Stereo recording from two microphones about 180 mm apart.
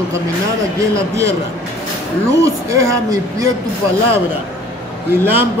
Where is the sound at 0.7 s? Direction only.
15° right (ahead or behind).